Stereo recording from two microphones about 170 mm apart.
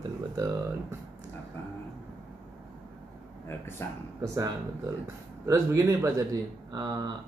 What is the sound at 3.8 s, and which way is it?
Speech, 15° left (ahead or behind).